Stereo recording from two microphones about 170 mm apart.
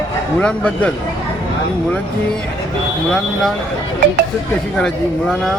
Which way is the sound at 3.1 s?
Centre (ahead or behind).